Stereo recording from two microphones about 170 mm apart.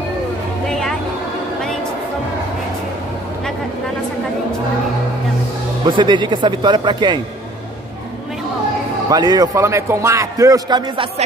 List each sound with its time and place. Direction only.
0.7 s music: 5° left (ahead or behind)
5.9 s a man's voice: 30° right (ahead or behind)
9.1 s a man's voice: 25° right (ahead or behind)